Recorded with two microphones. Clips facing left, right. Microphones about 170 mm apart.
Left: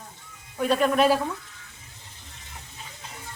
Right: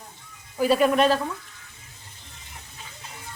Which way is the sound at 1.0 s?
10° left (ahead or behind).